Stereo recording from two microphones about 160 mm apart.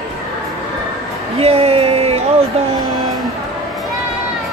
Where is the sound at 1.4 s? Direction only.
40° right (ahead or behind).